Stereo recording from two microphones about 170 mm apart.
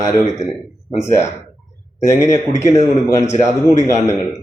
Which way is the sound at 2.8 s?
40° left (ahead or behind).